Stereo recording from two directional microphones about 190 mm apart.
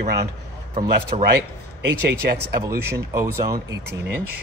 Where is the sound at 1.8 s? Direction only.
60° right (ahead or behind).